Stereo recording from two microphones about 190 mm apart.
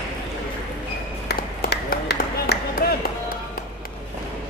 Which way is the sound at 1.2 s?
55° left (ahead or behind).